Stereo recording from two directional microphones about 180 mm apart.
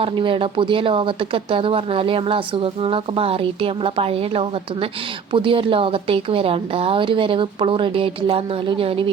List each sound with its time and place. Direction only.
0.0 s a woman's voice: 30° right (ahead or behind)